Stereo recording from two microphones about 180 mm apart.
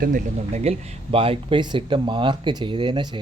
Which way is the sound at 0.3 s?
35° right (ahead or behind).